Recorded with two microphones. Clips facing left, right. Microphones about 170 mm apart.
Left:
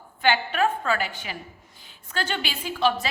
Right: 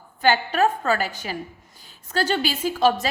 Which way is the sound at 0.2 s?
40° right (ahead or behind).